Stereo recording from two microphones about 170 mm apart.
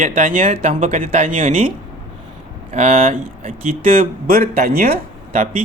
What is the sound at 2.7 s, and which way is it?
Speech, 35° right (ahead or behind).